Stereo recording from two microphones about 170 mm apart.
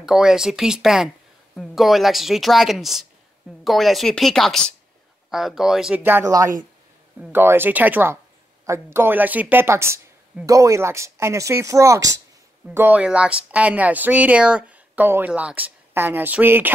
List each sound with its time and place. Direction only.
0.0 s speech: 5° right (ahead or behind)